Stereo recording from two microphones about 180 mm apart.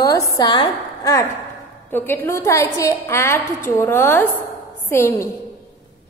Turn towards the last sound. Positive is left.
turn(degrees=15)  # may be behind; listen again after turning